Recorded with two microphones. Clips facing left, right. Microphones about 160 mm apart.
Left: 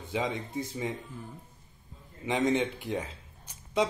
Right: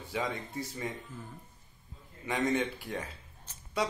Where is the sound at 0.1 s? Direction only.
20° left (ahead or behind).